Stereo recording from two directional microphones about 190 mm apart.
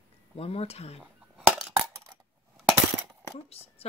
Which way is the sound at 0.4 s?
30° left (ahead or behind).